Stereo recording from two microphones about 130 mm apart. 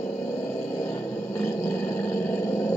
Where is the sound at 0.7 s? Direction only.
20° left (ahead or behind).